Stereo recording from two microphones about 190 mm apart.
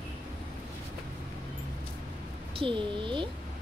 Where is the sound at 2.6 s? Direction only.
25° right (ahead or behind).